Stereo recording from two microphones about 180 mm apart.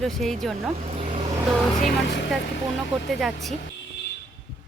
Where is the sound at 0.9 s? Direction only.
30° right (ahead or behind).